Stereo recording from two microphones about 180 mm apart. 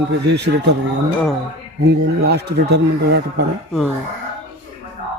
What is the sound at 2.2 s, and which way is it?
Speech, 65° right (ahead or behind).